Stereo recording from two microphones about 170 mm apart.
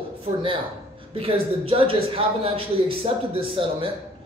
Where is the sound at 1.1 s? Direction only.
35° right (ahead or behind).